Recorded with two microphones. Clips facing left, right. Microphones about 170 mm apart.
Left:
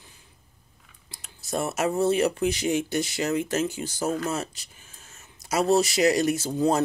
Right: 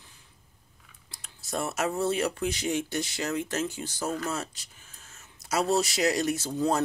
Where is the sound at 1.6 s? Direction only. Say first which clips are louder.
Left 4 dB; 5° left (ahead or behind).